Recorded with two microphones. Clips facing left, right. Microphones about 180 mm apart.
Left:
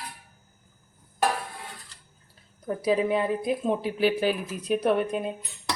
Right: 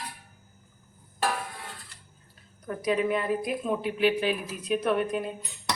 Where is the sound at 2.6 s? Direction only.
30° left (ahead or behind).